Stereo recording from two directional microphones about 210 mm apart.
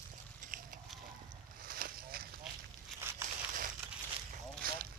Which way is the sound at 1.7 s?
45° right (ahead or behind).